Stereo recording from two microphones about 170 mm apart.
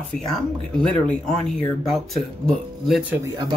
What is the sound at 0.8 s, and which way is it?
Speech, 5° left (ahead or behind).